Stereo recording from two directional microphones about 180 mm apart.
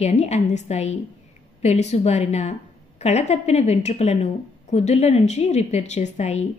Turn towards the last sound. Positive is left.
turn(degrees=40)  # may be behind; listen again after turning